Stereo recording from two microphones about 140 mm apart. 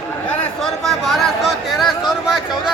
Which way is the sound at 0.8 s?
Centre (ahead or behind).